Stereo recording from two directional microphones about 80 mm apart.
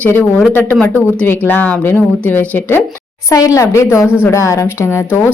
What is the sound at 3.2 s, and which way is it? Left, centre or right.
A woman's voice, left.